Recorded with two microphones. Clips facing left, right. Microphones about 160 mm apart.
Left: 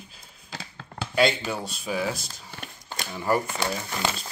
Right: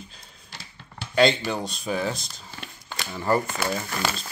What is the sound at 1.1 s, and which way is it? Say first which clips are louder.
Speech: right 3 dB; 5° left (ahead or behind).